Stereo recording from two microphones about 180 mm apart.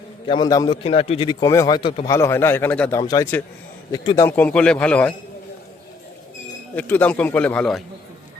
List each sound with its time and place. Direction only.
0.3 s a man's voice: 25° left (ahead or behind)
2.1 s a man's voice: 15° left (ahead or behind)
4.3 s speech: 10° left (ahead or behind)
6.7 s speech: 10° left (ahead or behind)